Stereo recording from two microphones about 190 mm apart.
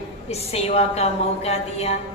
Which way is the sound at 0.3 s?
35° left (ahead or behind).